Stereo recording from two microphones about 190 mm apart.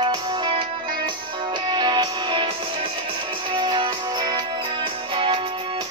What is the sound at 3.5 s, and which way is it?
Music, 25° right (ahead or behind).